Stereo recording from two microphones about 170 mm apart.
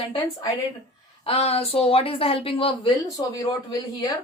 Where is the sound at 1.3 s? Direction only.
35° left (ahead or behind).